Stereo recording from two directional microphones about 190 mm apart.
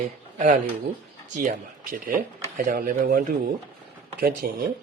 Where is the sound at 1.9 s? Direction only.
45° right (ahead or behind).